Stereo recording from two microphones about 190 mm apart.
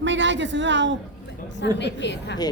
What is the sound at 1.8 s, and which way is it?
Speech, 65° left (ahead or behind).